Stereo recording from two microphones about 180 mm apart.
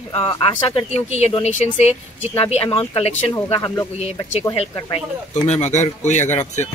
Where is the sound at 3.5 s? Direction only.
20° left (ahead or behind).